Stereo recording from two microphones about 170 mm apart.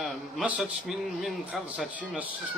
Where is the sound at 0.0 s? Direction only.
5° right (ahead or behind).